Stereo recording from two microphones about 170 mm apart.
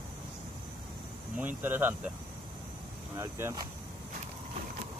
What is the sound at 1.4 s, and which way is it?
Speech, 10° right (ahead or behind).